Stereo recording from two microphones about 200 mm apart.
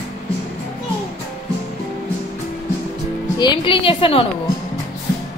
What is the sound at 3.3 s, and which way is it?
Speech, 20° left (ahead or behind).